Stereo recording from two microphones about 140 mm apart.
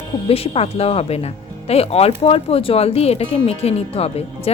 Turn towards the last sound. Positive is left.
turn(degrees=45)  # may be behind; listen again after turning